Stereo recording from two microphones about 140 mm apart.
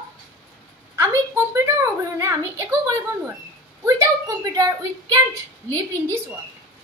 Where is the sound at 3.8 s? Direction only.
25° right (ahead or behind).